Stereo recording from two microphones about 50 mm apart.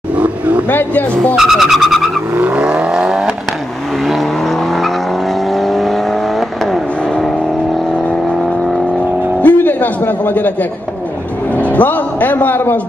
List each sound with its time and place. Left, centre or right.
0.1 s vehicle: right
0.7 s speech: left
1.3 s speech: centre
2.3 s vehicle: right
2.6 s vehicle: right
4.0 s vehicle: centre
9.4 s music: left
11.5 s a man's voice: left